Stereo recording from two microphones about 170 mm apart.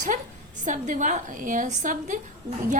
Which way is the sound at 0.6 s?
45° right (ahead or behind).